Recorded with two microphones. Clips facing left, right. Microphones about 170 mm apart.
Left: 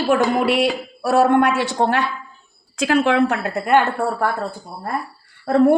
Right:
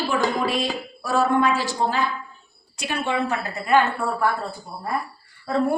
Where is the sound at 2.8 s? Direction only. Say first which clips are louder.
Left 8 dB; 90° left; by 3.8 s 65° left (ahead or behind).